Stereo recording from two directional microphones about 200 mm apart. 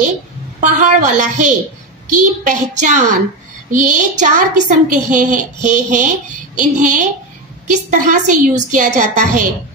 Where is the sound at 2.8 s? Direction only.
40° right (ahead or behind).